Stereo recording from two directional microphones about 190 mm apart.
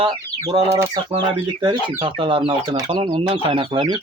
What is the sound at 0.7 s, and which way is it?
Speech, 15° right (ahead or behind).